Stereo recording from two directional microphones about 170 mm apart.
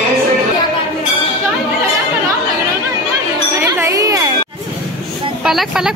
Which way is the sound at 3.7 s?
20° right (ahead or behind).